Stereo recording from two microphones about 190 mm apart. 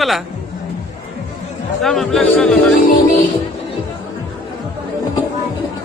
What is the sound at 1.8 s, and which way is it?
Speech, centre (ahead or behind).